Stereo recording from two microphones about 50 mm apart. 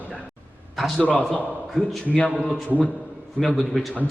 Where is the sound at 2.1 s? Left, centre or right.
Left.